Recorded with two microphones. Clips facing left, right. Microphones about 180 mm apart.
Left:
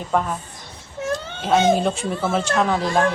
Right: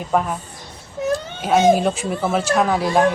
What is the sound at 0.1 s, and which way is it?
Speech, 10° right (ahead or behind).